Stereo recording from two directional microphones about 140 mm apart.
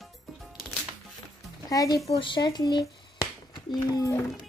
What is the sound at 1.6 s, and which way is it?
A woman's voice, 25° left (ahead or behind).